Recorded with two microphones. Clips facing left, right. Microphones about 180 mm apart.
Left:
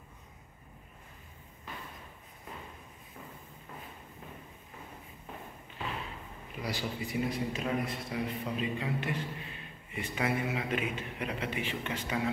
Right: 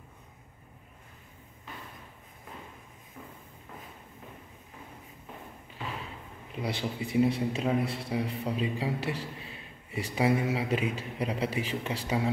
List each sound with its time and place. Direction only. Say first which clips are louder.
6.5 s a man's voice: right 3 dB; 25° right (ahead or behind)